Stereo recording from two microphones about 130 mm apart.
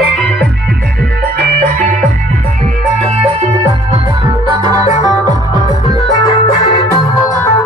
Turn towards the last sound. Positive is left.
turn(degrees=25)  # may be behind; listen again after turning